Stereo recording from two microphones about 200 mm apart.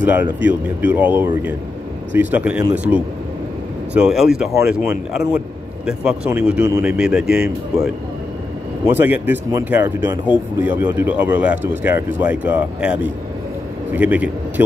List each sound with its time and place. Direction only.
0.0 s speech: 10° right (ahead or behind)
8.9 s speech: 10° right (ahead or behind)